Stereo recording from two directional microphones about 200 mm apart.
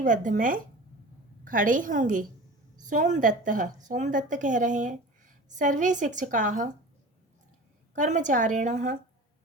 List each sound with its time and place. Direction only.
0.0 s a woman's voice: 40° right (ahead or behind)
7.9 s a woman's voice: 40° right (ahead or behind)